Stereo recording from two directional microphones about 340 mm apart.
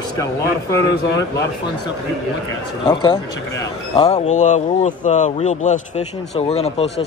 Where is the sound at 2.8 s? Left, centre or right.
Centre.